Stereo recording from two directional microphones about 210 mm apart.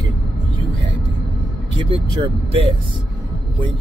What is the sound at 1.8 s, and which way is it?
Speech, 25° right (ahead or behind).